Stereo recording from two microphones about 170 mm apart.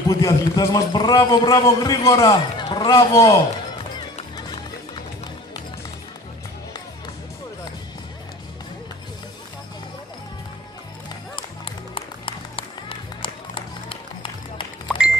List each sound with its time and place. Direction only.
0.1 s a man's voice: 20° left (ahead or behind)
11.3 s music: 30° left (ahead or behind)